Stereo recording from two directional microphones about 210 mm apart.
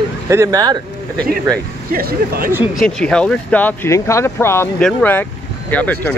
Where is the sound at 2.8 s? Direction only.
5° left (ahead or behind).